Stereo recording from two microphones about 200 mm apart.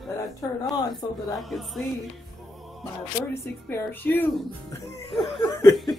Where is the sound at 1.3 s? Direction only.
Centre (ahead or behind).